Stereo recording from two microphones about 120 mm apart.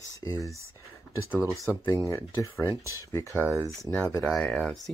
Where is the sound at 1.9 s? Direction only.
25° left (ahead or behind).